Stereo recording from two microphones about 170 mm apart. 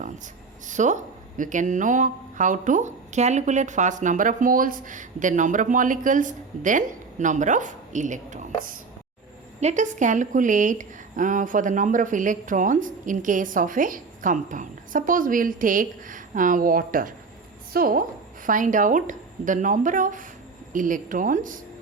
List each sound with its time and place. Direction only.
0.7 s a woman's voice: 45° right (ahead or behind)